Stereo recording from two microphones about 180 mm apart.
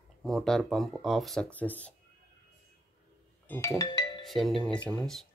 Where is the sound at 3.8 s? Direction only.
20° left (ahead or behind).